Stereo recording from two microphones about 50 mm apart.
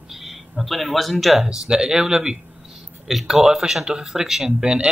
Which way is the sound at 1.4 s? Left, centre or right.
Centre.